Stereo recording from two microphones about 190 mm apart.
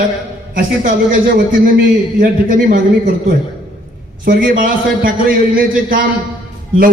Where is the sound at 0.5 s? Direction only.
45° right (ahead or behind).